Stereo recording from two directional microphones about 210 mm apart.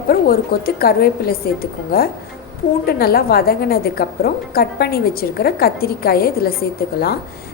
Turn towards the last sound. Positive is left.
turn(degrees=45)  # may be behind; listen again after turning